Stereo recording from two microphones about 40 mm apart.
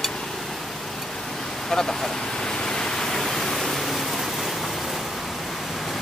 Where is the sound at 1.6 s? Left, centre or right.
Centre.